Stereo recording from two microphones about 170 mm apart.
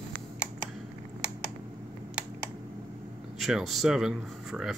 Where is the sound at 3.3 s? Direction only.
Centre (ahead or behind).